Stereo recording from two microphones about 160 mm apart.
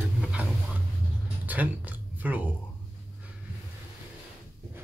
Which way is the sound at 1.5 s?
10° right (ahead or behind).